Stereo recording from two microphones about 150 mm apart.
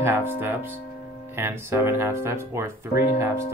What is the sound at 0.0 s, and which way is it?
Speech, 15° right (ahead or behind).